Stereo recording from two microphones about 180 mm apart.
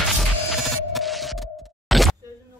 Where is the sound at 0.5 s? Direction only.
Centre (ahead or behind).